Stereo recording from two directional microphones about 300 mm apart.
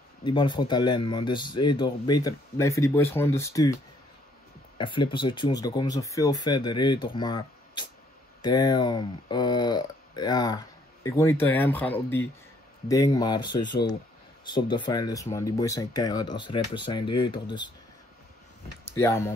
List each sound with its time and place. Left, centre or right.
0.2 s speech: centre
4.7 s speech: centre
18.9 s speech: centre